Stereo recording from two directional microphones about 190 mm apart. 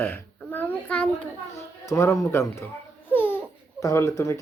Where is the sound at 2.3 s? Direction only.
15° left (ahead or behind).